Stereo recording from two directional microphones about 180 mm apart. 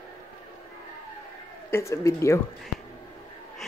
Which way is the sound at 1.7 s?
15° left (ahead or behind).